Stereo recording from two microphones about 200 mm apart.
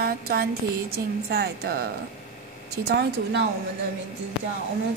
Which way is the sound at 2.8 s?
55° right (ahead or behind).